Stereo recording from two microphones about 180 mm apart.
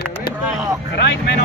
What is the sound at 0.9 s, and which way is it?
Vehicle, 70° left (ahead or behind).